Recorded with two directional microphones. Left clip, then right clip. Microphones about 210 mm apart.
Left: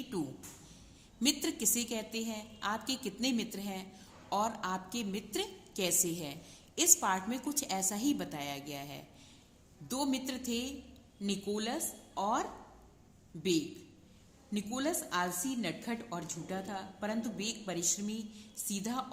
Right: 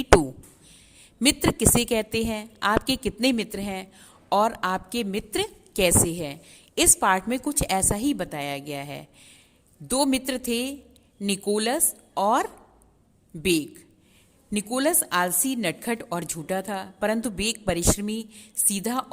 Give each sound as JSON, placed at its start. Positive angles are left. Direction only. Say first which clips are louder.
{"t": 1.2, "sound": "a woman's voice", "louder": "right 11 dB", "side_deg": -45}